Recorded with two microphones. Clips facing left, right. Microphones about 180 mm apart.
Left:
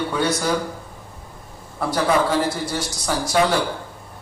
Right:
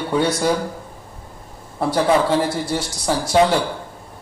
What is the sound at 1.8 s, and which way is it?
A man's voice, 30° right (ahead or behind).